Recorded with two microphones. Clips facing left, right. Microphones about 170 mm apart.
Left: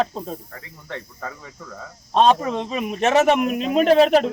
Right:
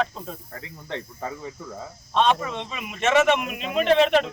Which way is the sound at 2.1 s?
35° left (ahead or behind).